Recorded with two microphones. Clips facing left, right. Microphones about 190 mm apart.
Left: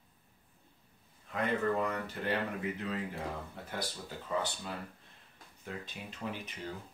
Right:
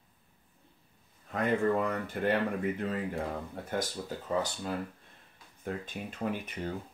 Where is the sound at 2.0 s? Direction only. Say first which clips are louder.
Right 5 dB; 50° right (ahead or behind).